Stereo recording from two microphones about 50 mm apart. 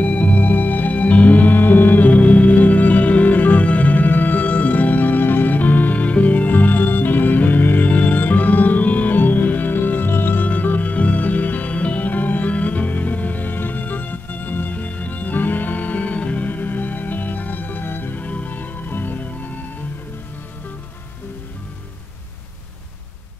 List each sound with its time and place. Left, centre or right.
0.0 s music: left
18.2 s music: left